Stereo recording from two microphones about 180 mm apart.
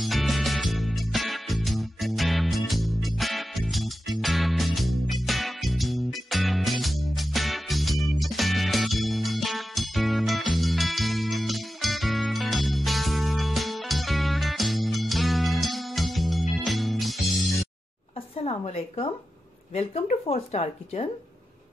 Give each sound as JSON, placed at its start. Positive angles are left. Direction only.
{"t": 0.0, "sound": "music", "side_deg": 0}
{"t": 18.3, "sound": "a woman's voice", "side_deg": 35}